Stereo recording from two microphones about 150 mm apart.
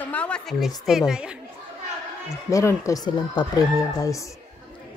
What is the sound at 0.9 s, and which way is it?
Speech, 5° right (ahead or behind).